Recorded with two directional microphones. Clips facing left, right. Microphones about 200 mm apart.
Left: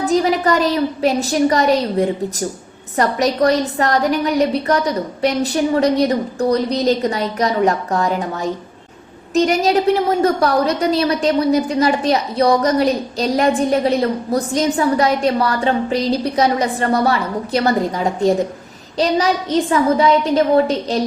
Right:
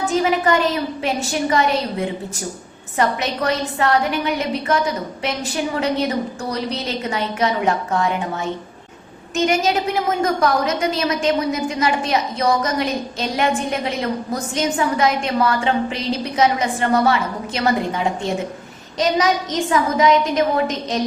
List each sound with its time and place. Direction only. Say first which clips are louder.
0.0 s a woman's voice: left 3 dB; 35° left (ahead or behind)